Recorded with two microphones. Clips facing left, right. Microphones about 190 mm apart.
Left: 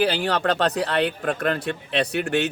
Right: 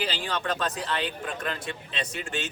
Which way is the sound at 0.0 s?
65° left (ahead or behind).